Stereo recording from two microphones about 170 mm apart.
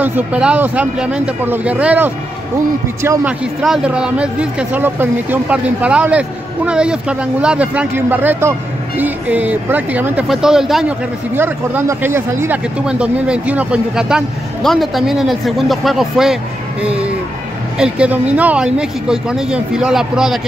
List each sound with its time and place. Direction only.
0.0 s speech: 10° right (ahead or behind)
3.6 s speech: 5° right (ahead or behind)